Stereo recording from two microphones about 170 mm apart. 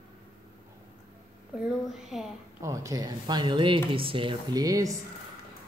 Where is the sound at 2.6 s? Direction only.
20° right (ahead or behind).